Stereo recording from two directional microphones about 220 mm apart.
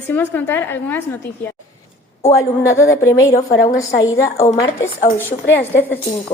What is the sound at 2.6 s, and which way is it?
Speech, 15° left (ahead or behind).